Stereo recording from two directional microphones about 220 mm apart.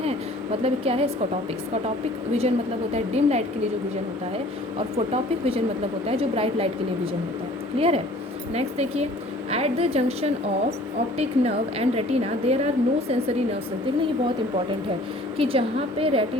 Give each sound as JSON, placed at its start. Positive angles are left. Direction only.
{"t": 0.6, "sound": "a woman's voice", "side_deg": -25}
{"t": 2.9, "sound": "a woman's voice", "side_deg": -30}
{"t": 4.8, "sound": "a woman's voice", "side_deg": -25}
{"t": 15.4, "sound": "a woman's voice", "side_deg": -25}